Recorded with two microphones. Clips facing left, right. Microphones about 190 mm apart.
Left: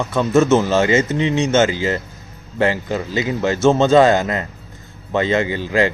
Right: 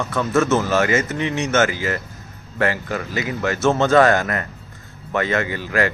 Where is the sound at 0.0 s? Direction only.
25° left (ahead or behind).